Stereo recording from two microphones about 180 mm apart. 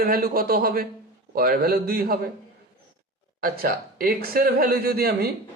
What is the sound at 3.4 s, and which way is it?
A man's voice, 55° right (ahead or behind).